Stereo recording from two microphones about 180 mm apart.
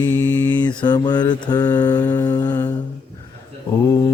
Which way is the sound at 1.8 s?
15° left (ahead or behind).